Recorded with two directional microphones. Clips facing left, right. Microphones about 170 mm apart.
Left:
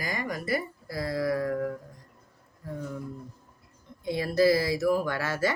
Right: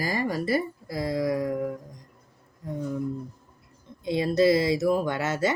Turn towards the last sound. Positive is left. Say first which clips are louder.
# right 2 dB
turn(degrees=-20)  # may be behind; listen again after turning